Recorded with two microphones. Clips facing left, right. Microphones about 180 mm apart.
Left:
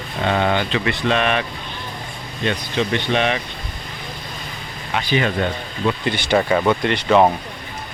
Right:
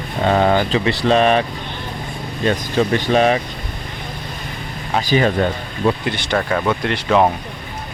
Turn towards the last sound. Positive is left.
turn(degrees=0)  # may be behind; listen again after turning